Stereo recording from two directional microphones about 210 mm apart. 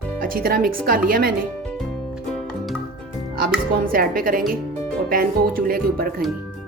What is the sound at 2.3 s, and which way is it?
Music, 5° left (ahead or behind).